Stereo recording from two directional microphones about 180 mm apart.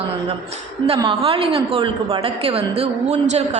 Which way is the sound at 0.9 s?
30° right (ahead or behind).